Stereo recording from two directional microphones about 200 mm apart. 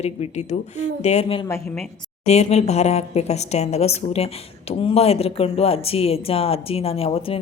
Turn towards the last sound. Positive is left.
turn(degrees=30)  # may be behind; listen again after turning